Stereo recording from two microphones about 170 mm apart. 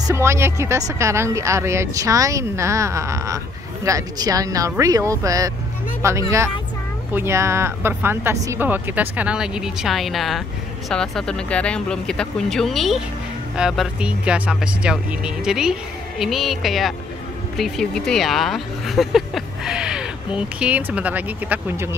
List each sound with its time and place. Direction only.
0.0 s speech: 15° right (ahead or behind)